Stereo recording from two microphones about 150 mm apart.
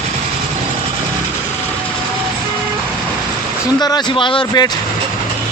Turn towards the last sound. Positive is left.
turn(degrees=30)  # may be behind; listen again after turning